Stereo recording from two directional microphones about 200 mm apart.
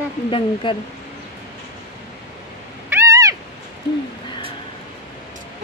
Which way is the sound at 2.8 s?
15° right (ahead or behind).